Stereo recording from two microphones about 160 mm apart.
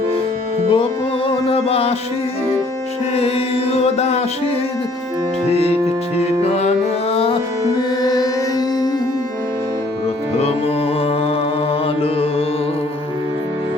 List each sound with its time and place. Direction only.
0.7 s music: 35° left (ahead or behind)
3.2 s mantra: 40° left (ahead or behind)
5.5 s mantra: 40° left (ahead or behind)
6.1 s music: 40° left (ahead or behind)
7.8 s music: 25° left (ahead or behind)
10.3 s music: 40° left (ahead or behind)